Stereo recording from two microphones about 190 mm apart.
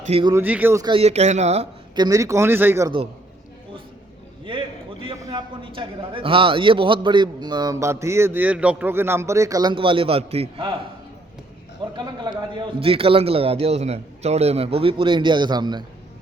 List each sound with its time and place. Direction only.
0.0 s speech: 35° right (ahead or behind)
0.3 s speech: 10° right (ahead or behind)
0.9 s speech: 35° right (ahead or behind)
2.0 s speech: 20° right (ahead or behind)
4.5 s a sound: 25° right (ahead or behind)
5.0 s a man's voice: 25° right (ahead or behind)
11.9 s a man's voice: 25° right (ahead or behind)